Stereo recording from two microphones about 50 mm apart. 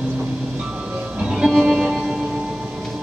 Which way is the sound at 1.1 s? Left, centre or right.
Centre.